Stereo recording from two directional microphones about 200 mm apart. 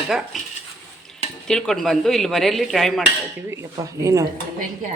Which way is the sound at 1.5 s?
5° left (ahead or behind).